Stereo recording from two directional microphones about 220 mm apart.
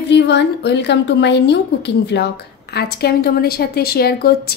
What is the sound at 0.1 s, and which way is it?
A woman's voice, 50° left (ahead or behind).